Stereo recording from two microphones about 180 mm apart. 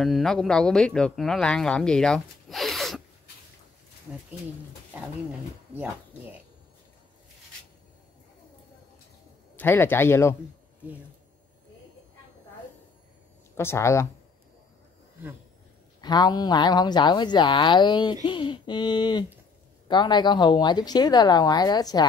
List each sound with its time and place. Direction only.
0.0 s speech: centre (ahead or behind)
9.6 s speech: 10° left (ahead or behind)
13.6 s speech: 15° left (ahead or behind)
16.0 s speech: 25° left (ahead or behind)